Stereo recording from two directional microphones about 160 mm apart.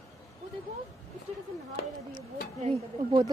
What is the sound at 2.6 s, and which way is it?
Speech, 30° right (ahead or behind).